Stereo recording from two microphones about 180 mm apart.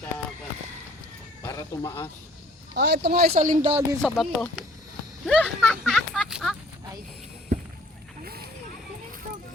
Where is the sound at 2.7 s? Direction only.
70° right (ahead or behind); by 3.8 s 45° right (ahead or behind).